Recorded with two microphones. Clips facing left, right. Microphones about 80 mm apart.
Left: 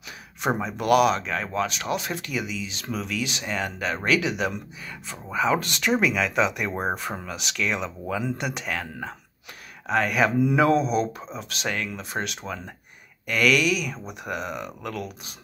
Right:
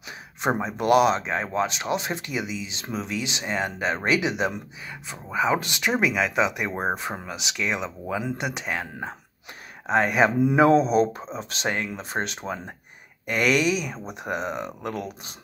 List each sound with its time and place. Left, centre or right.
0.4 s speech: right